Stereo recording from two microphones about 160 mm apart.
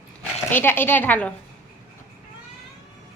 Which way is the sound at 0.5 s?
15° left (ahead or behind).